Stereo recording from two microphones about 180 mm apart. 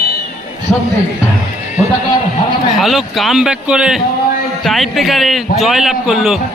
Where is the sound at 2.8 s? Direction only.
Centre (ahead or behind).